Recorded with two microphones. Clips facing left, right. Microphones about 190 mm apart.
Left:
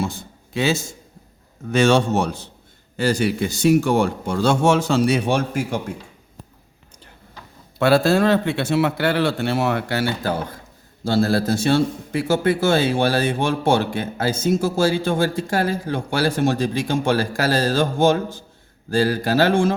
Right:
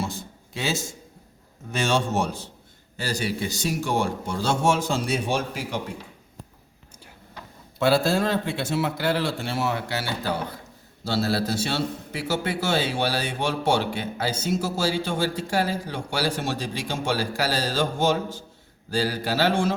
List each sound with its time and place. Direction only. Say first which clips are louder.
0.0 s a sound: left 5 dB; 60° left (ahead or behind)
1.7 s speech: left 7 dB; 70° left (ahead or behind)
3.0 s speech: left 8 dB; 55° left (ahead or behind)
7.8 s a man's voice: left 5 dB; 65° left (ahead or behind)